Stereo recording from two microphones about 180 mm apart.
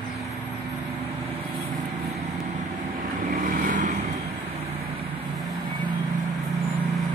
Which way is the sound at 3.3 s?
50° right (ahead or behind).